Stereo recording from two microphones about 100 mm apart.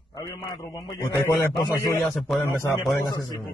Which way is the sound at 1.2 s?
25° left (ahead or behind).